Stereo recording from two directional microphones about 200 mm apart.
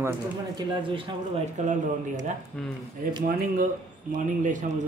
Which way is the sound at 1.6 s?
35° right (ahead or behind).